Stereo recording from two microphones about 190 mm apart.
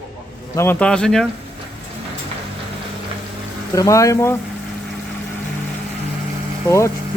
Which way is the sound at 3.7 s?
15° left (ahead or behind).